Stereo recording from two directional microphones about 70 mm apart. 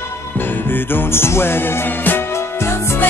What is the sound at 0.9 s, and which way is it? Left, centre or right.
Music, left.